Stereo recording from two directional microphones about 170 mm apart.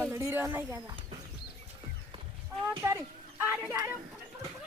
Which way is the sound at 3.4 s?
15° right (ahead or behind).